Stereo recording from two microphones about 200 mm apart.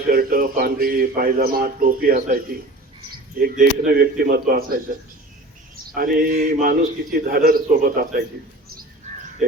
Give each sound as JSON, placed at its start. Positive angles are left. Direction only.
{"t": 0.1, "sound": "a man's voice", "side_deg": -45}